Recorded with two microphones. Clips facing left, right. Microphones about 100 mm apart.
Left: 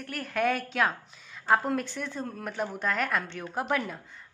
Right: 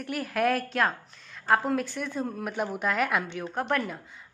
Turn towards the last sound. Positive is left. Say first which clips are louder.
# right 1 dB
turn(degrees=0)  # may be behind; listen again after turning